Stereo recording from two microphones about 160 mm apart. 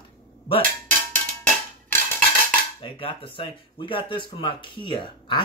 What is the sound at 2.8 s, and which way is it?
Speech, 30° left (ahead or behind).